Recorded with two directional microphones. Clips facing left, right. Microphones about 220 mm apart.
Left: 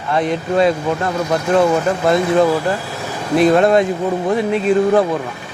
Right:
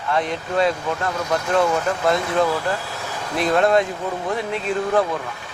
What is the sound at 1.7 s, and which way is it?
Speech, 20° left (ahead or behind).